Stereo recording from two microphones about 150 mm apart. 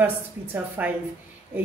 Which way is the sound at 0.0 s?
10° right (ahead or behind).